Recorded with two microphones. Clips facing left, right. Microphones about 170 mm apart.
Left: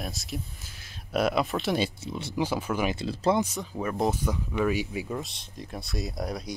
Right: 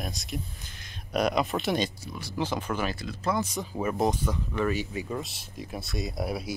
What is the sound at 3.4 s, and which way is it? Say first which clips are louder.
Speech: even; 5° left (ahead or behind).